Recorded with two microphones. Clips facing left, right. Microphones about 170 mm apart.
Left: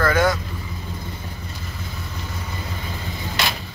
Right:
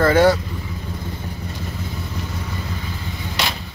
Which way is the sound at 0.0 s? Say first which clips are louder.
Right 5 dB; 30° right (ahead or behind).